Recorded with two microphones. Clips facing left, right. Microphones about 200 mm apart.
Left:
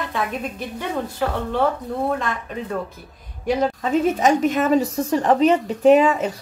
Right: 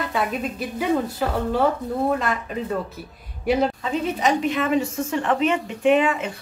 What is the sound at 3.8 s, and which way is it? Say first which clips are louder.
A woman's voice: left 5 dB; 45° left (ahead or behind).